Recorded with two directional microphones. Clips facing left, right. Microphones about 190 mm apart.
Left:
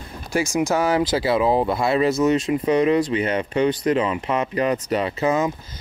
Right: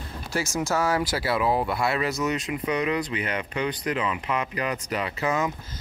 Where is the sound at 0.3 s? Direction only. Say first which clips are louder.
Left 6 dB; 15° left (ahead or behind).